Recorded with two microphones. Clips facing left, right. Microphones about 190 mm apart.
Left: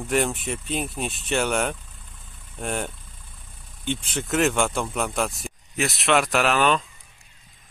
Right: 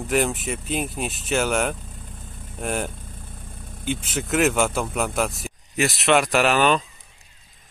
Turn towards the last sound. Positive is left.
turn(degrees=0)  # may be behind; listen again after turning